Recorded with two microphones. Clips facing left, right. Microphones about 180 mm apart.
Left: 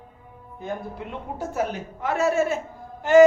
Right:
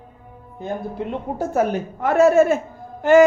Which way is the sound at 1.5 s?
50° right (ahead or behind).